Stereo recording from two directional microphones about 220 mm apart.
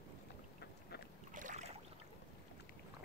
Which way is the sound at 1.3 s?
35° right (ahead or behind).